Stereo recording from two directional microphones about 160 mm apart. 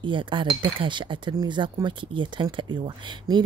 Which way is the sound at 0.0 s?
30° right (ahead or behind).